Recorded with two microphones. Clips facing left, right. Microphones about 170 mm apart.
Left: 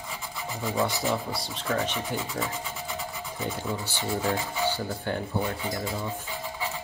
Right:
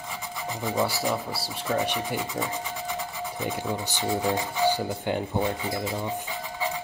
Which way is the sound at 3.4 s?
15° right (ahead or behind).